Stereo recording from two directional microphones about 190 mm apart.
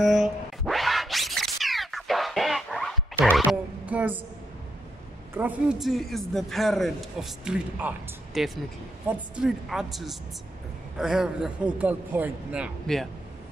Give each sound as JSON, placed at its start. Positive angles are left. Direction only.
{"t": 0.0, "sound": "scratch", "side_deg": 0}
{"t": 3.3, "sound": "music", "side_deg": 5}
{"t": 3.8, "sound": "a sound", "side_deg": -10}
{"t": 5.3, "sound": "a man's voice", "side_deg": -5}